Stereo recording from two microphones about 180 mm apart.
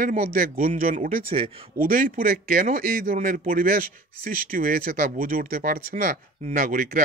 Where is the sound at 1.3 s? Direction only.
30° right (ahead or behind).